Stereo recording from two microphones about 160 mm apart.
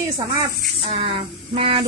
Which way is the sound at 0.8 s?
35° right (ahead or behind).